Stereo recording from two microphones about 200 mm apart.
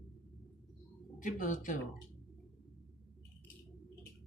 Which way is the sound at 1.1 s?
40° left (ahead or behind).